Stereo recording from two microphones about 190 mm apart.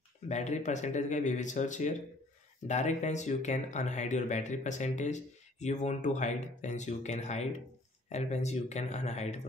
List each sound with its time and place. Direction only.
0.3 s speech: 40° left (ahead or behind)